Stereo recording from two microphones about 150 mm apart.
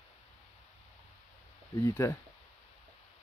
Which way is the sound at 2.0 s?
20° left (ahead or behind).